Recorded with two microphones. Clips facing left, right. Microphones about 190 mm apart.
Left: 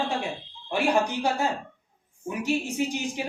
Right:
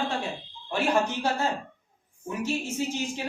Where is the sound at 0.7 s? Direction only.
15° left (ahead or behind).